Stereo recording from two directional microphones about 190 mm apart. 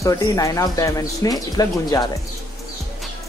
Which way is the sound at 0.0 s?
15° left (ahead or behind).